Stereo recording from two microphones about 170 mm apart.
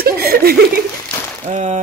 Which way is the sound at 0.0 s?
65° right (ahead or behind).